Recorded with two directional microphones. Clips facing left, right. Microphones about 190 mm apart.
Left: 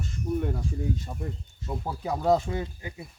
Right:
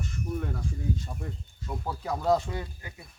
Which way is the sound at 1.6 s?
20° left (ahead or behind).